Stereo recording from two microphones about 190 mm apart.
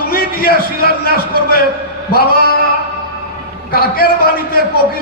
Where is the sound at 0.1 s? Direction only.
50° left (ahead or behind).